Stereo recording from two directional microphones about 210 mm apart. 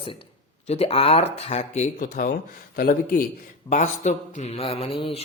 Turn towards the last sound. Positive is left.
turn(degrees=25)  # may be behind; listen again after turning